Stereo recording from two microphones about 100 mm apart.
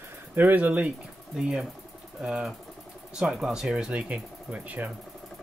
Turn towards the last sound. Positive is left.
turn(degrees=-15)  # may be behind; listen again after turning